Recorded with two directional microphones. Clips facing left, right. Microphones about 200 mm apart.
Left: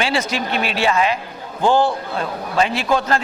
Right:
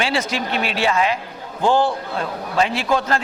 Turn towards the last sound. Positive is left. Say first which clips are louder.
# left 1 dB
turn(degrees=20)  # may be behind; listen again after turning